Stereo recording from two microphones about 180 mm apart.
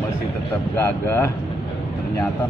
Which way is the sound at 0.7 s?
10° left (ahead or behind).